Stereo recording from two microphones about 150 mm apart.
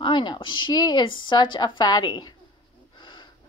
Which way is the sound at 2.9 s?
30° left (ahead or behind).